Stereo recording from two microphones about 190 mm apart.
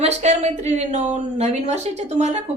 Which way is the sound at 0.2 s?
35° right (ahead or behind).